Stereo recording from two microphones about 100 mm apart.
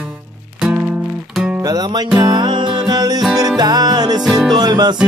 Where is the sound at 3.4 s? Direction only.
40° right (ahead or behind).